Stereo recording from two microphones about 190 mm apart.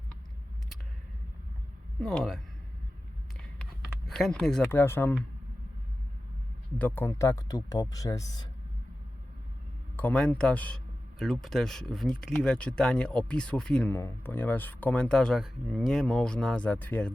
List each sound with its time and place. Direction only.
2.0 s speech: centre (ahead or behind)
3.6 s speech: centre (ahead or behind)
6.7 s speech: 10° left (ahead or behind)
10.0 s speech: 5° left (ahead or behind)